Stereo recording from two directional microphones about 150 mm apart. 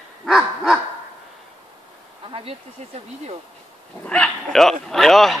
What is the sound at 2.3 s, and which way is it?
Speech, 40° right (ahead or behind).